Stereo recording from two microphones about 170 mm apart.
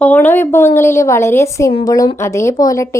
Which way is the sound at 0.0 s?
10° left (ahead or behind).